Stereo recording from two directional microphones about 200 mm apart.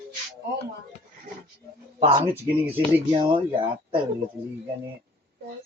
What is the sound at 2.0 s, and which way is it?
Speech, 35° right (ahead or behind).